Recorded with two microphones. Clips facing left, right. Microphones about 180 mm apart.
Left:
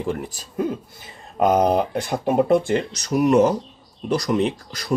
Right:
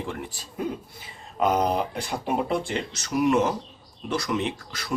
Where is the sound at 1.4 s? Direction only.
50° left (ahead or behind); by 4.9 s 35° left (ahead or behind).